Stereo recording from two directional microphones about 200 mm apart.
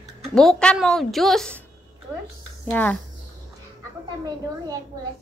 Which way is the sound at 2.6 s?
10° left (ahead or behind).